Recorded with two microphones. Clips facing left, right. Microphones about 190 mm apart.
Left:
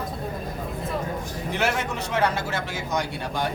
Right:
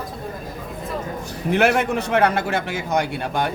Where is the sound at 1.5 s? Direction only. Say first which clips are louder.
Right 8 dB; 60° right (ahead or behind).